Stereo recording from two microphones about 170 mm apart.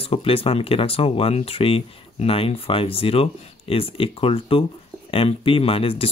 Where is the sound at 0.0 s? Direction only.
35° left (ahead or behind).